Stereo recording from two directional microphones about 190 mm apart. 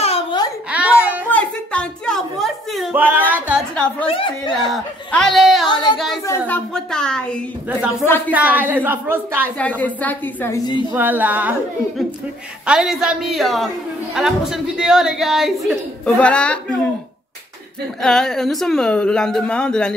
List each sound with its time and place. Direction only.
0.0 s a sound: 30° left (ahead or behind)
0.7 s a sound: 5° right (ahead or behind)
1.3 s a sound: 5° left (ahead or behind); by 3.3 s 10° right (ahead or behind)
3.7 s a woman's voice: 5° left (ahead or behind)
4.1 s speech: 25° left (ahead or behind)
4.7 s a man's voice: centre (ahead or behind)
5.7 s speech: 25° left (ahead or behind)
6.2 s a man's voice: 10° left (ahead or behind)
8.3 s a woman's voice: 10° right (ahead or behind)
9.6 s a woman's voice: 10° left (ahead or behind)
10.9 s a woman's voice: 10° right (ahead or behind)
12.6 s a man's voice: 5° right (ahead or behind)
18.0 s a man's voice: centre (ahead or behind)